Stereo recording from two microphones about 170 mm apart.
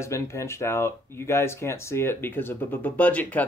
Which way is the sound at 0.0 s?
15° left (ahead or behind).